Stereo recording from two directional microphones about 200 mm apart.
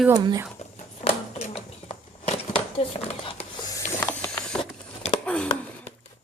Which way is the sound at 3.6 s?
15° left (ahead or behind).